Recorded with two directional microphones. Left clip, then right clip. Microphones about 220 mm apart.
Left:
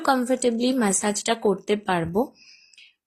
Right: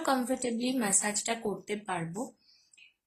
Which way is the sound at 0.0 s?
30° left (ahead or behind).